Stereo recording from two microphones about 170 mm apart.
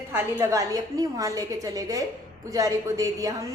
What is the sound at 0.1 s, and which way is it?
A woman's voice, 15° right (ahead or behind).